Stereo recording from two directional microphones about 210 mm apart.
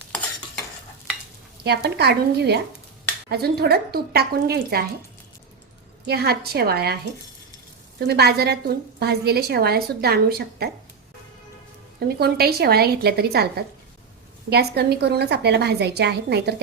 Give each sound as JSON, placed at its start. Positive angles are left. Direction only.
{"t": 1.6, "sound": "a woman's voice", "side_deg": -50}
{"t": 6.1, "sound": "a woman's voice", "side_deg": -50}
{"t": 11.9, "sound": "a woman's voice", "side_deg": -50}